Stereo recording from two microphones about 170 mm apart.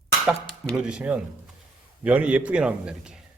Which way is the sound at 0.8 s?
5° right (ahead or behind).